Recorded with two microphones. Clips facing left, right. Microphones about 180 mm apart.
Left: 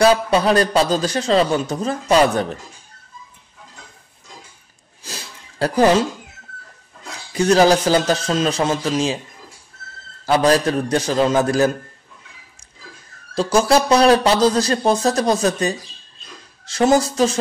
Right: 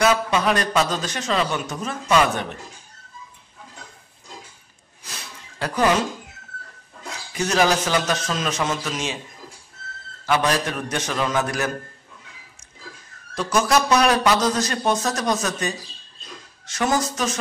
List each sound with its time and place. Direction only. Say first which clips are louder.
0.0 s a man's voice: left 5 dB; 30° left (ahead or behind)
5.0 s a sound: left 4 dB; 30° left (ahead or behind)
7.3 s a man's voice: left 7 dB; 35° left (ahead or behind)
10.2 s a man's voice: left 6 dB; 35° left (ahead or behind)
13.3 s a man's voice: left 5 dB; 30° left (ahead or behind)